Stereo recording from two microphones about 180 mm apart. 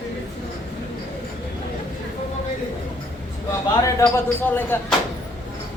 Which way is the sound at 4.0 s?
10° left (ahead or behind).